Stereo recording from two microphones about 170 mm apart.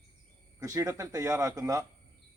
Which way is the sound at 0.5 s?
20° right (ahead or behind).